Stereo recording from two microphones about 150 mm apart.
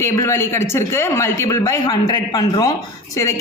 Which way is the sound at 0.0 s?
15° left (ahead or behind).